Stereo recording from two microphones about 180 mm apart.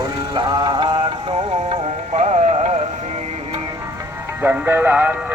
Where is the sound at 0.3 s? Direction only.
25° right (ahead or behind).